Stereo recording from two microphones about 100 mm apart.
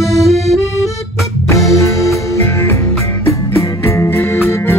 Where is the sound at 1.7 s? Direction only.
30° left (ahead or behind).